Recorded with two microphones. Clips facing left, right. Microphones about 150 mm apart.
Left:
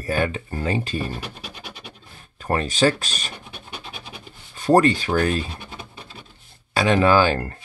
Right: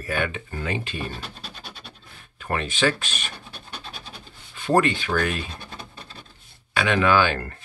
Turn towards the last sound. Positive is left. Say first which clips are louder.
# left 3 dB
turn(degrees=35)  # may be behind; listen again after turning